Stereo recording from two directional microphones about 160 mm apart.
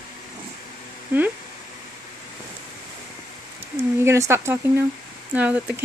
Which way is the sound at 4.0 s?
15° right (ahead or behind).